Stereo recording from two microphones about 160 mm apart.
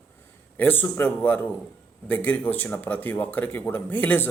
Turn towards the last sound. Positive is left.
turn(degrees=10)  # may be behind; listen again after turning